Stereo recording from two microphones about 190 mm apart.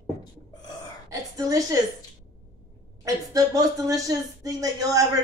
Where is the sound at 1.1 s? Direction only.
20° right (ahead or behind).